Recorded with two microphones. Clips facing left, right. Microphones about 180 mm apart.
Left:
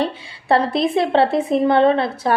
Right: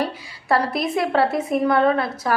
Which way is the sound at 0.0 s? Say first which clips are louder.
Left 3 dB; 25° left (ahead or behind).